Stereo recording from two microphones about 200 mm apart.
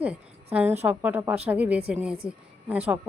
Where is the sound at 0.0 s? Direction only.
5° right (ahead or behind).